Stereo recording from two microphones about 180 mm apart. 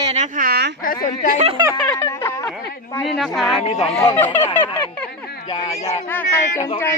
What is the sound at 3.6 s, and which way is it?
Speech, 35° left (ahead or behind).